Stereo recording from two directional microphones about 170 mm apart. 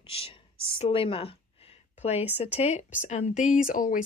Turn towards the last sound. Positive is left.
turn(degrees=50)  # may be behind; listen again after turning